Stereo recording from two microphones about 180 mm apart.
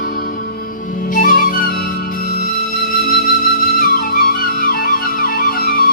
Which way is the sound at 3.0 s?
55° left (ahead or behind).